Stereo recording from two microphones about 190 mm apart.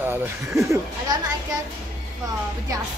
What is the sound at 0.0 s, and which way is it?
Speech, 15° right (ahead or behind).